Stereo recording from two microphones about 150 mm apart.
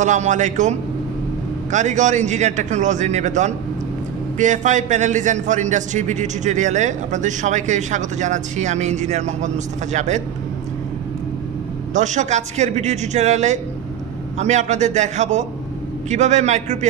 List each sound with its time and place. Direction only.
0.0 s a man's voice: 55° right (ahead or behind)
11.9 s a man's voice: 50° right (ahead or behind)